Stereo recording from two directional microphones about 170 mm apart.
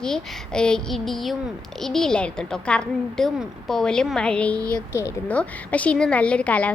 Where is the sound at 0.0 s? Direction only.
5° left (ahead or behind).